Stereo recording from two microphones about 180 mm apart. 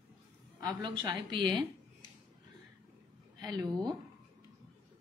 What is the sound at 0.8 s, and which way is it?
Speech, 25° right (ahead or behind).